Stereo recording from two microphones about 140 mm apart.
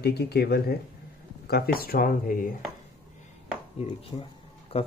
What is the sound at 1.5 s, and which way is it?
Speech, 90° left.